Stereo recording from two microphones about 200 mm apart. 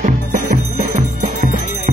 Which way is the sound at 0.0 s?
40° right (ahead or behind).